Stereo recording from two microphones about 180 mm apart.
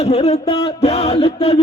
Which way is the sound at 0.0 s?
35° left (ahead or behind).